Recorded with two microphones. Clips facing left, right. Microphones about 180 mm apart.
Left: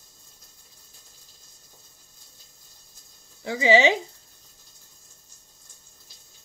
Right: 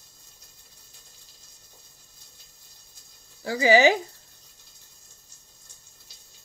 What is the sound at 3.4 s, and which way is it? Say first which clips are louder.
Speech: right 1 dB; 20° left (ahead or behind).